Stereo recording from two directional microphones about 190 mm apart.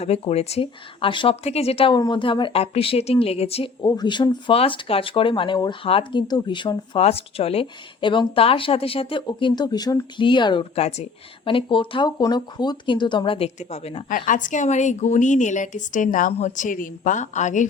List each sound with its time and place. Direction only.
0.0 s speech: 35° left (ahead or behind)
3.8 s speech: 20° left (ahead or behind); by 17.7 s 40° left (ahead or behind)